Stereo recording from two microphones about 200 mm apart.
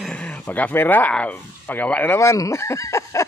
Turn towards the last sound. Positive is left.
turn(degrees=15)  # may be behind; listen again after turning